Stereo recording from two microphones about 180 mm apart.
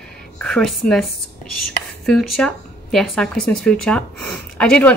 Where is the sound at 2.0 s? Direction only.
Centre (ahead or behind).